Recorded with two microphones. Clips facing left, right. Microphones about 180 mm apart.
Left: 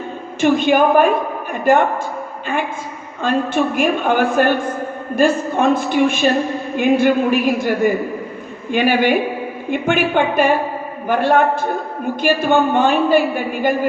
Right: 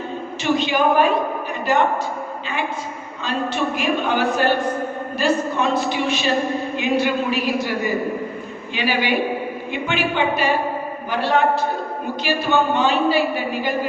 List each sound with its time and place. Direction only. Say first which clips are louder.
0.4 s a man's voice: left 5 dB; 50° left (ahead or behind)
3.2 s a man's voice: left 6 dB; 50° left (ahead or behind)